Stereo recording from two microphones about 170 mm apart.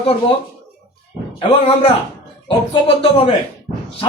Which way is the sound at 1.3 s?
35° left (ahead or behind).